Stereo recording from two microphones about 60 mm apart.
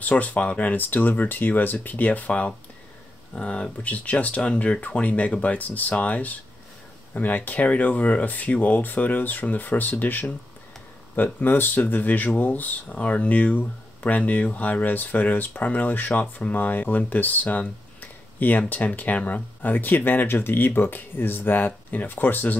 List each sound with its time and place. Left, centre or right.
0.0 s speech: left
11.3 s speech: left